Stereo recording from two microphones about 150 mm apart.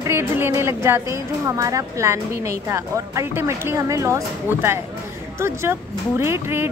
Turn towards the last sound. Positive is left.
turn(degrees=-15)  # may be behind; listen again after turning